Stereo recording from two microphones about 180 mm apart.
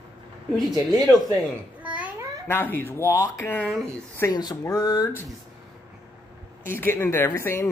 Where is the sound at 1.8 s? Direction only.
10° right (ahead or behind).